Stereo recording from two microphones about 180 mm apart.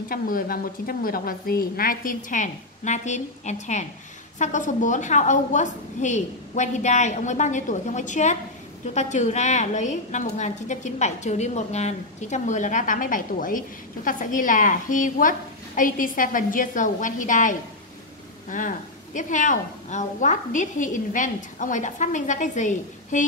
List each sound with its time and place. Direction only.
0.1 s a woman's voice: 55° left (ahead or behind)